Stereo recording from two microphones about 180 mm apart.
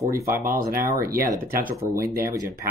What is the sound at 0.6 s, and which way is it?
Speech, 55° right (ahead or behind).